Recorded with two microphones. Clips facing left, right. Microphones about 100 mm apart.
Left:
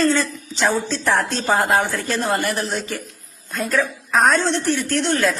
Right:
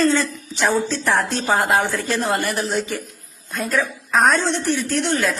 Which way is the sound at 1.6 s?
5° right (ahead or behind).